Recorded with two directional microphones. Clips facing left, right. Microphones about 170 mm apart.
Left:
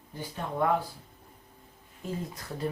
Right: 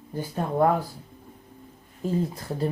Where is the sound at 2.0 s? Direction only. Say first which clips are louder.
Right 9 dB; 30° right (ahead or behind).